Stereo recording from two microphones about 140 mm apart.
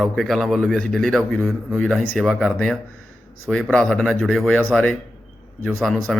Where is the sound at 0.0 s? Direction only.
Centre (ahead or behind).